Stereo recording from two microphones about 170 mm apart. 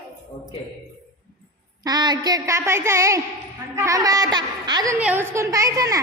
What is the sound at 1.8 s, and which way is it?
A woman's voice, 25° right (ahead or behind).